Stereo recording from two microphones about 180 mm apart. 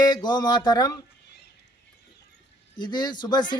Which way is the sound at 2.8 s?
25° left (ahead or behind).